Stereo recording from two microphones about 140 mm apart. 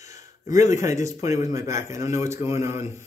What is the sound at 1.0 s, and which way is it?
A man's voice, 20° right (ahead or behind).